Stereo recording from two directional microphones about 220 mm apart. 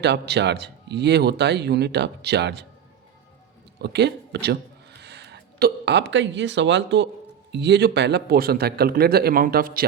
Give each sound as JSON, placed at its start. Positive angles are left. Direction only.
{"t": 0.0, "sound": "speech", "side_deg": -50}
{"t": 3.8, "sound": "speech", "side_deg": -50}